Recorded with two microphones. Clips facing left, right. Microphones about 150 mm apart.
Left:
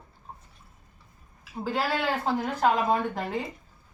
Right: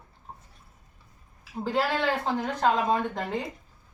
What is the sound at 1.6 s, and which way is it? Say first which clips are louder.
Speech: right 2 dB; 5° left (ahead or behind).